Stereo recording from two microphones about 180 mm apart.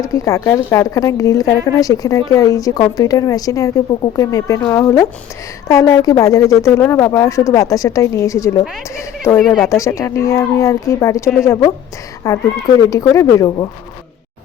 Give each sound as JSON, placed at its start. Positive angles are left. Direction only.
{"t": 0.0, "sound": "speech", "side_deg": 20}
{"t": 9.4, "sound": "speech", "side_deg": 0}
{"t": 9.6, "sound": "speech", "side_deg": 15}